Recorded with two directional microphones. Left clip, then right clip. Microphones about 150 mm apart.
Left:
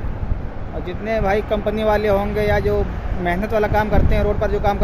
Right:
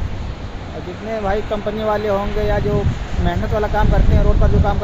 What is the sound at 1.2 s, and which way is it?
Speech, 40° left (ahead or behind).